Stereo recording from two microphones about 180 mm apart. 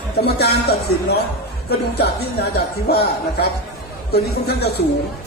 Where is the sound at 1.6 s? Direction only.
65° left (ahead or behind).